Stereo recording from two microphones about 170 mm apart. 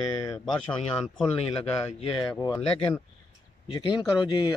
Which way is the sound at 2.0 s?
30° left (ahead or behind).